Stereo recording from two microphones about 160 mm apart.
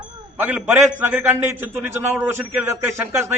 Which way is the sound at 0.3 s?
10° right (ahead or behind).